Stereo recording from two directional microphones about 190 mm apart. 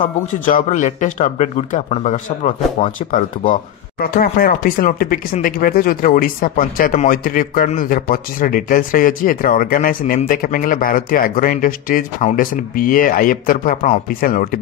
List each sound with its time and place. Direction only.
0.5 s a man's voice: 45° left (ahead or behind)